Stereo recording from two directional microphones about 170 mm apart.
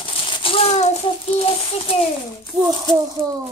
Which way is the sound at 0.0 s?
30° left (ahead or behind).